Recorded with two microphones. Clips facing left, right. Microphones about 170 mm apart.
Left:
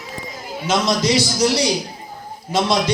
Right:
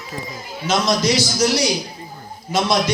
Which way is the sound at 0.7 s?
25° left (ahead or behind).